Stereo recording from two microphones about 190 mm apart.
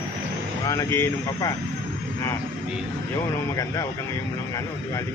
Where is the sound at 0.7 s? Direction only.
15° left (ahead or behind).